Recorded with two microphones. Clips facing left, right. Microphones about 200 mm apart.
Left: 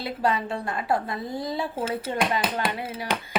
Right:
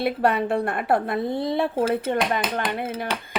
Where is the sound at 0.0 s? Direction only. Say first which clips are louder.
Right 5 dB; 60° right (ahead or behind).